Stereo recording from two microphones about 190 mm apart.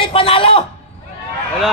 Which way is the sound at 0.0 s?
30° left (ahead or behind).